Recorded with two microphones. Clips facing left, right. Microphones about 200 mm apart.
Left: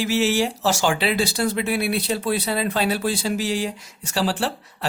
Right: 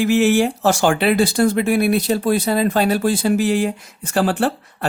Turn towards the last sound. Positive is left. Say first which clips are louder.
# right 6 dB
turn(degrees=-55)  # may be behind; listen again after turning